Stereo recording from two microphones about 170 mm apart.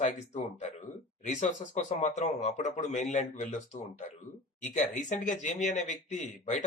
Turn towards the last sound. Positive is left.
turn(degrees=45)  # may be behind; listen again after turning